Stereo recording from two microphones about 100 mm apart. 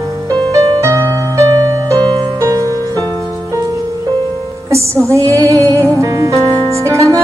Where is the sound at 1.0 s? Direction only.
25° left (ahead or behind).